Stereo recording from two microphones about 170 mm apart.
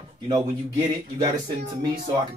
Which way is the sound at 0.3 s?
25° right (ahead or behind).